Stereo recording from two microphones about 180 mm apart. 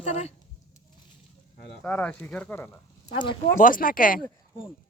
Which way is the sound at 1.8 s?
10° left (ahead or behind).